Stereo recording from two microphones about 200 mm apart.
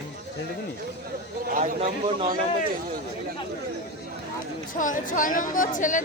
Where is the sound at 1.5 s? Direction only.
40° right (ahead or behind).